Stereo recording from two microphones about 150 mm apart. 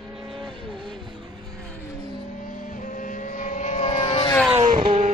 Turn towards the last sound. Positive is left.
turn(degrees=-35)  # may be behind; listen again after turning